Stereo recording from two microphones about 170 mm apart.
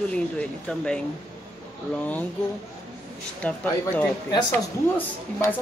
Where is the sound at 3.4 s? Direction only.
10° left (ahead or behind).